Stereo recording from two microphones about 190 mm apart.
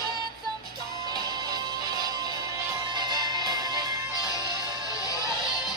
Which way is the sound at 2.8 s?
25° right (ahead or behind).